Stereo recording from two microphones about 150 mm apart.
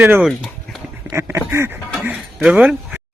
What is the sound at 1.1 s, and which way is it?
Speech, 15° right (ahead or behind).